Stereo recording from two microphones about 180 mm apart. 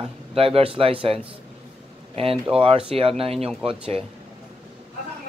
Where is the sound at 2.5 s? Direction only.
30° right (ahead or behind).